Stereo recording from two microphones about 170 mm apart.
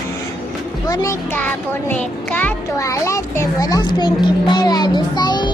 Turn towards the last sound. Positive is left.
turn(degrees=25)  # may be behind; listen again after turning